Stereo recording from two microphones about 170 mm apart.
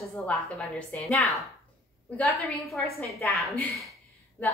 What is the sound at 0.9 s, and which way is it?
A woman's voice, centre (ahead or behind).